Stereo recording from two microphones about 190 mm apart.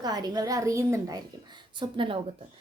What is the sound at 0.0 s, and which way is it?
A woman's voice, 20° right (ahead or behind).